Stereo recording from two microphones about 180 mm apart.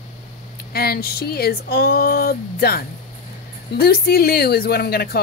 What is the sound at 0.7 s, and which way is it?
Speech, 60° left (ahead or behind).